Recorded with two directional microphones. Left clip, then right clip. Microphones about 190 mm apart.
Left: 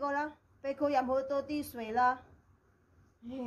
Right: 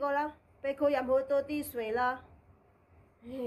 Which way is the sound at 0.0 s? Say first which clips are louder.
Right 3 dB; 15° right (ahead or behind).